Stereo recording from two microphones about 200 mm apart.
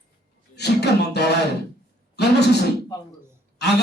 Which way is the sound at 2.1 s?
55° left (ahead or behind).